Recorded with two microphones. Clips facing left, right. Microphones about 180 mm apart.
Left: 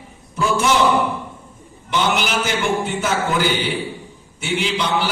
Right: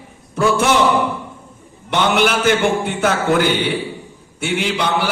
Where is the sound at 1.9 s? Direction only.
60° right (ahead or behind).